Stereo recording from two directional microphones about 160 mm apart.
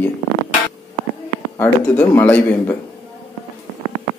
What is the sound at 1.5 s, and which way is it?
Speech, 15° left (ahead or behind).